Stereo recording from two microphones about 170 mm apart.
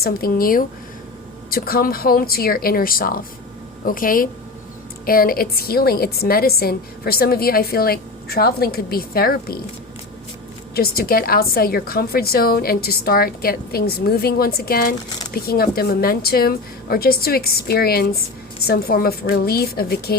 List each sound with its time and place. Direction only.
0.0 s a woman's voice: 60° left (ahead or behind)
10.8 s a woman's voice: 65° left (ahead or behind)